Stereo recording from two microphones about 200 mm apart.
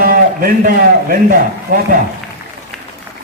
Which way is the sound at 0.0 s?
45° right (ahead or behind).